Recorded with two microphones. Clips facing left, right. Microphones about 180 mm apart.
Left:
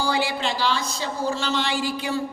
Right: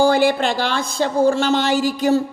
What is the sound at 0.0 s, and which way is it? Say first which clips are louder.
Music: right 9 dB; 50° right (ahead or behind).